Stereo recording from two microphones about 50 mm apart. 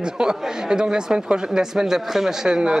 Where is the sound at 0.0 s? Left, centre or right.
Centre.